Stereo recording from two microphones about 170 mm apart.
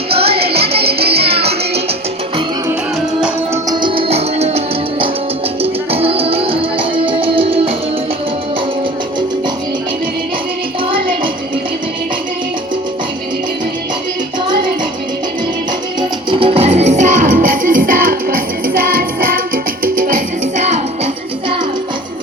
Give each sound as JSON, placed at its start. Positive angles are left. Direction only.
{"t": 0.1, "sound": "music", "side_deg": -35}
{"t": 3.2, "sound": "music", "side_deg": -5}
{"t": 3.7, "sound": "music", "side_deg": -30}
{"t": 16.0, "sound": "music", "side_deg": -30}